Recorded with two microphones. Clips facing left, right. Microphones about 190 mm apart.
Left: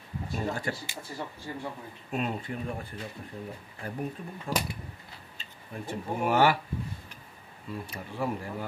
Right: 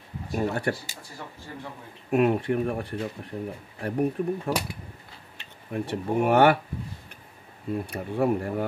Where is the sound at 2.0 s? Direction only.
60° right (ahead or behind).